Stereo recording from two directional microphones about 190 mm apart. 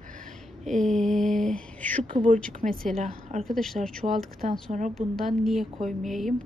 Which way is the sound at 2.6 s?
40° right (ahead or behind).